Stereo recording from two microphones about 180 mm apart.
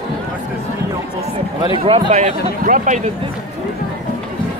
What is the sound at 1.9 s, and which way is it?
Speech, 40° right (ahead or behind).